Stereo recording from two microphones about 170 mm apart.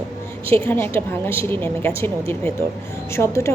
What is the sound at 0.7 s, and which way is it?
A woman's voice, 10° left (ahead or behind).